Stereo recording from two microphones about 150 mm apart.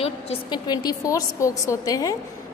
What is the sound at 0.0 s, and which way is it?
A woman's voice, 35° left (ahead or behind).